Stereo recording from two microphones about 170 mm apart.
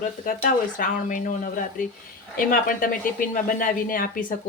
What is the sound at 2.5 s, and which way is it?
Speech, 55° left (ahead or behind).